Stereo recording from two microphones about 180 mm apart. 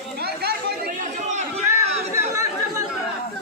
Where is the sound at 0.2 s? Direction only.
60° right (ahead or behind).